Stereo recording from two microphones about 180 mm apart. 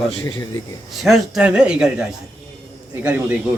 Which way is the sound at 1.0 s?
Centre (ahead or behind).